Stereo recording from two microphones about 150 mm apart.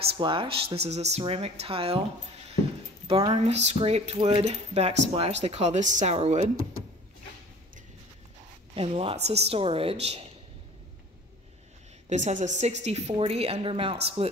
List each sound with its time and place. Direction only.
0.1 s speech: 35° right (ahead or behind)
8.7 s speech: 40° right (ahead or behind)
12.1 s speech: 50° right (ahead or behind)